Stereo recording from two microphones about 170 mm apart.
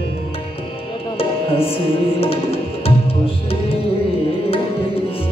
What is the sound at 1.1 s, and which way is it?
Tabla, 35° left (ahead or behind).